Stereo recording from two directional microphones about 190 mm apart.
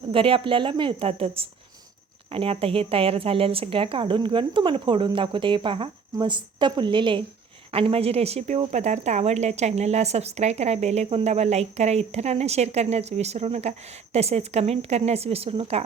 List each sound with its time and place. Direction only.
0.1 s speech: 30° right (ahead or behind)